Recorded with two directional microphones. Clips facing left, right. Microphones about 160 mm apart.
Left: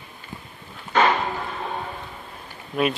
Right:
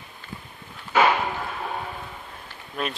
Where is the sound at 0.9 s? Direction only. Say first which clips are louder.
Even; 10° right (ahead or behind).